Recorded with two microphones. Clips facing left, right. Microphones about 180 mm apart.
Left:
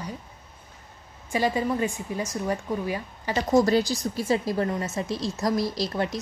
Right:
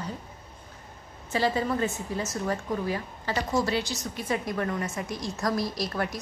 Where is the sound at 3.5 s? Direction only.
40° left (ahead or behind).